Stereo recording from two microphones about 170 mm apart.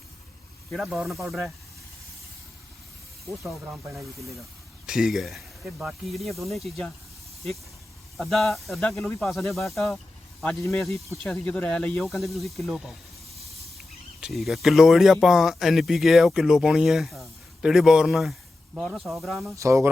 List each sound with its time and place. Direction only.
0.7 s speech: 5° right (ahead or behind)
3.2 s speech: centre (ahead or behind)
8.1 s speech: centre (ahead or behind)
11.2 s speech: 5° left (ahead or behind)
19.5 s speech: 15° right (ahead or behind)